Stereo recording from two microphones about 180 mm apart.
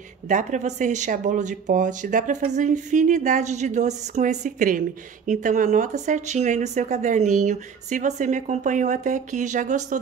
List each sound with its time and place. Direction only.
0.3 s speech: 40° right (ahead or behind)